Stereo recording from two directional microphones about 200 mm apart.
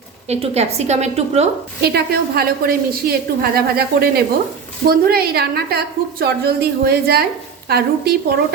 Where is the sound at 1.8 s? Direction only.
50° right (ahead or behind).